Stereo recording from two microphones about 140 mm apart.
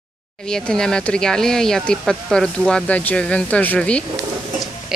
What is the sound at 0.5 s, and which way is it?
Speech, 5° left (ahead or behind).